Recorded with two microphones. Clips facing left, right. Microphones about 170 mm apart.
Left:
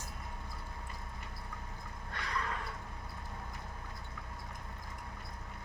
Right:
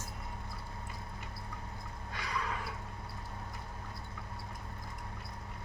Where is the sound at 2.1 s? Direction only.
Centre (ahead or behind).